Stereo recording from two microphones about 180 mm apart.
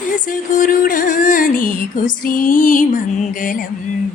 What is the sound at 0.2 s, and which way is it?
Music, 45° left (ahead or behind).